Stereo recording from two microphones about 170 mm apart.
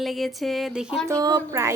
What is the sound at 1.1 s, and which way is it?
Speech, 20° right (ahead or behind).